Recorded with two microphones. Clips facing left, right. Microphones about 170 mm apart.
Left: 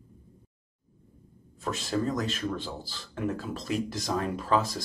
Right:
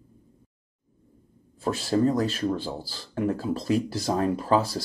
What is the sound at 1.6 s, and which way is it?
Speech, 35° right (ahead or behind).